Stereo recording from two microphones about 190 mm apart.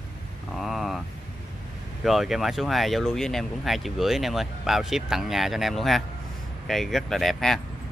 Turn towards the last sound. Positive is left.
turn(degrees=0)  # may be behind; listen again after turning